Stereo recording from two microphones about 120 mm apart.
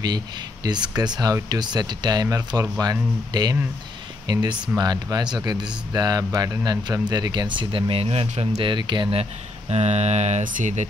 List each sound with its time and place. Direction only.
0.9 s speech: 35° right (ahead or behind); by 8.6 s 60° right (ahead or behind)
8.6 s speech: 40° right (ahead or behind)
9.2 s speech: 65° right (ahead or behind); by 10.9 s 85° right